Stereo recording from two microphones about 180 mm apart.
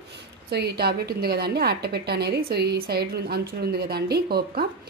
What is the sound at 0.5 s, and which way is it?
A woman's voice, 65° right (ahead or behind).